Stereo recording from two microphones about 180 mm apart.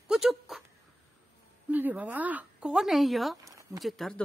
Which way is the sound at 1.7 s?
10° right (ahead or behind).